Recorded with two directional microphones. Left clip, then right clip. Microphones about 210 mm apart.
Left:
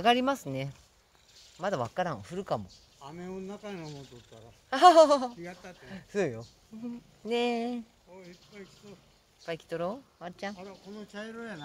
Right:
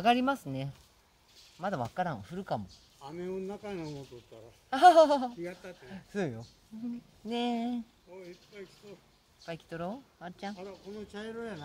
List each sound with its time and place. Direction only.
0.0 s speech: 25° left (ahead or behind)
3.0 s speech: 45° right (ahead or behind)
4.6 s speech: 30° left (ahead or behind)
5.4 s speech: 45° right (ahead or behind)
5.9 s speech: 30° left (ahead or behind)
8.2 s speech: 45° right (ahead or behind)
9.5 s speech: 30° left (ahead or behind)
10.6 s speech: 40° right (ahead or behind)